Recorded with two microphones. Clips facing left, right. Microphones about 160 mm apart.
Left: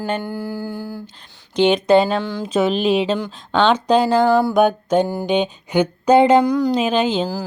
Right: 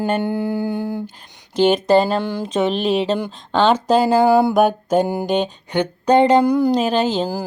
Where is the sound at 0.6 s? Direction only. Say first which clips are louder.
Right 5 dB; 70° right (ahead or behind).